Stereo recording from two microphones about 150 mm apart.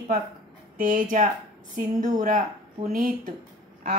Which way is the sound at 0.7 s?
65° right (ahead or behind).